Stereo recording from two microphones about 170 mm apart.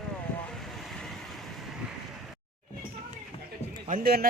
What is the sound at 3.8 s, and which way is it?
Speech, 55° right (ahead or behind).